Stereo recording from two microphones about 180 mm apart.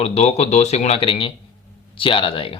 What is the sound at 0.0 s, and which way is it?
Speech, 35° left (ahead or behind).